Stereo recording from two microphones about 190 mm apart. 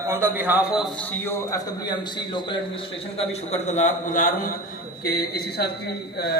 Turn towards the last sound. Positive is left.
turn(degrees=55)  # may be behind; listen again after turning